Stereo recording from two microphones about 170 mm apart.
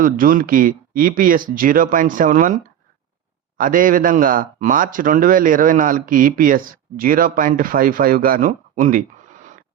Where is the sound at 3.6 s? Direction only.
55° right (ahead or behind).